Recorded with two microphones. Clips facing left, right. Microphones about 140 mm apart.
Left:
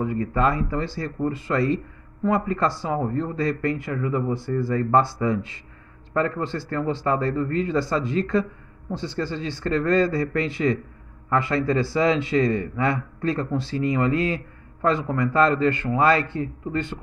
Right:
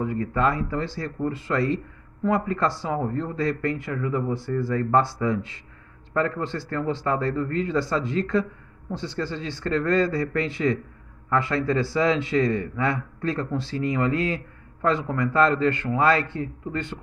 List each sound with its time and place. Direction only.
0.0 s speech: 15° left (ahead or behind)
2.2 s speech: 5° left (ahead or behind)
16.0 s speech: 20° left (ahead or behind)